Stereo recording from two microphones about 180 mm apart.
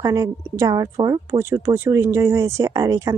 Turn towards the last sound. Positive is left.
turn(degrees=-20)  # may be behind; listen again after turning